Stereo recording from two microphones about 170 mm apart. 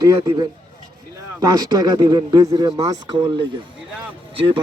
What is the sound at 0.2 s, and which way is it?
Speech, 25° right (ahead or behind).